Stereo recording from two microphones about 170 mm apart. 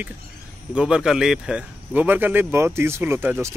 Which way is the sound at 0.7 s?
5° right (ahead or behind).